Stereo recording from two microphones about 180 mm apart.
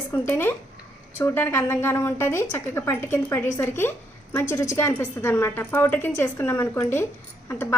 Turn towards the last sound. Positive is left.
turn(degrees=15)  # may be behind; listen again after turning